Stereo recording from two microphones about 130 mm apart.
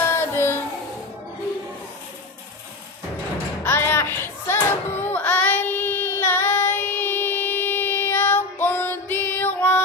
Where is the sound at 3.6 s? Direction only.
15° left (ahead or behind).